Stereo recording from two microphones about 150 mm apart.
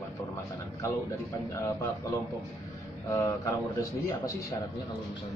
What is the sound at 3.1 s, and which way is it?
Speech, 20° left (ahead or behind).